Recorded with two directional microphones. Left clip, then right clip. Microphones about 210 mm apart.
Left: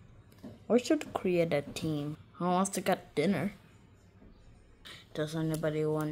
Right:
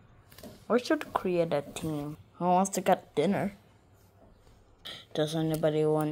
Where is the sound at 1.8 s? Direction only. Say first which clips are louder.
Even; 10° left (ahead or behind).